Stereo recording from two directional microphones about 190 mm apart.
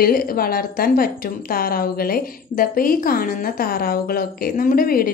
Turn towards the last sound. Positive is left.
turn(degrees=50)  # may be behind; listen again after turning